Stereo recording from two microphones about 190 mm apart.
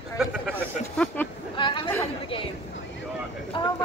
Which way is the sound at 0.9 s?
5° left (ahead or behind).